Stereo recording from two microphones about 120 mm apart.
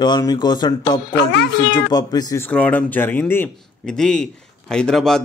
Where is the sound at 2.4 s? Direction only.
10° left (ahead or behind).